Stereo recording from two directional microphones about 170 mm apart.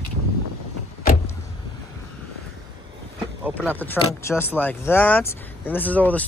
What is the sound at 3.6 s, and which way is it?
Speech, 10° left (ahead or behind).